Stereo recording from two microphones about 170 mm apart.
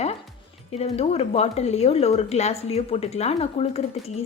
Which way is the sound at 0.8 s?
35° left (ahead or behind).